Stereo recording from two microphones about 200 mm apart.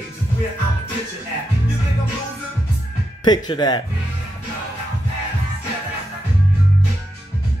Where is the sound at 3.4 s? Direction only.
20° left (ahead or behind).